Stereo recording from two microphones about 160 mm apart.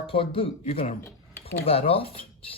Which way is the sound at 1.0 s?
15° left (ahead or behind).